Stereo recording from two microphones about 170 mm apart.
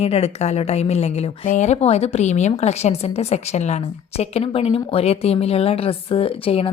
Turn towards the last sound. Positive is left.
turn(degrees=35)  # may be behind; listen again after turning